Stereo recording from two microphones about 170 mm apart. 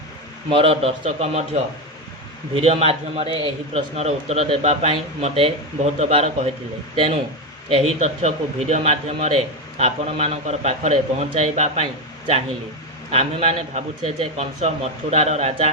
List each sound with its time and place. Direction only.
0.5 s a man's voice: 35° right (ahead or behind)
13.1 s a man's voice: 40° right (ahead or behind)